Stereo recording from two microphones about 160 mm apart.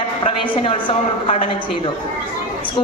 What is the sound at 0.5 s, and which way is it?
Speech, 35° left (ahead or behind).